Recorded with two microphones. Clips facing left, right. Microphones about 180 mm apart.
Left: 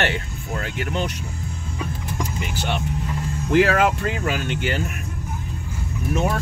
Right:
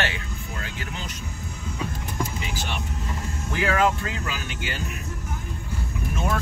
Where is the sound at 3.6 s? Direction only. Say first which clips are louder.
Left 4 dB; 70° left (ahead or behind).